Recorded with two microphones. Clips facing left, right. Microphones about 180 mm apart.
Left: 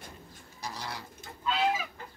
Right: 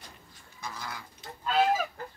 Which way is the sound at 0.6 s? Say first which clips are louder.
Left 1 dB; 35° left (ahead or behind).